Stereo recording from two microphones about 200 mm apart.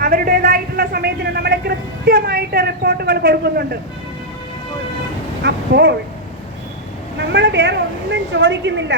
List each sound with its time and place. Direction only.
0.0 s vehicle: 45° right (ahead or behind)
5.4 s a woman's voice: 55° right (ahead or behind)
7.2 s a woman's voice: 60° right (ahead or behind)